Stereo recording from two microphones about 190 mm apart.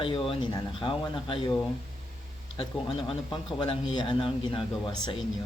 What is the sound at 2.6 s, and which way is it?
Speech, 25° left (ahead or behind).